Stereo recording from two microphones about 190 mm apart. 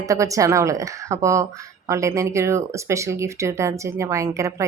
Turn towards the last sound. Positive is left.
turn(degrees=-15)  # may be behind; listen again after turning